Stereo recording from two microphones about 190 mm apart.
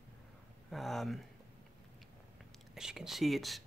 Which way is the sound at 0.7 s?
Centre (ahead or behind).